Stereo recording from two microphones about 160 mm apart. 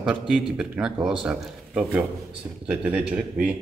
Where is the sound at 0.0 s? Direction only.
5° right (ahead or behind).